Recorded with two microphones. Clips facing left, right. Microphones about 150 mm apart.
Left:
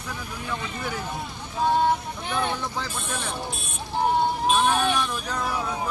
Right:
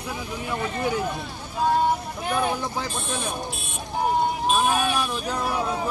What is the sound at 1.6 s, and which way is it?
Speech, 5° right (ahead or behind).